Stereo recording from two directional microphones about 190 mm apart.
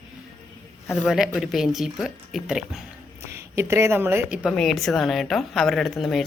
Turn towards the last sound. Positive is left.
turn(degrees=0)  # may be behind; listen again after turning